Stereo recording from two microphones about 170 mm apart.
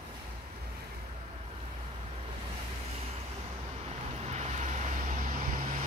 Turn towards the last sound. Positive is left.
turn(degrees=-45)  # may be behind; listen again after turning